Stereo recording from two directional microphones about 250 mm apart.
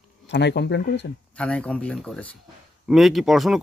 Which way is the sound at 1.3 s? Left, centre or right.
Centre.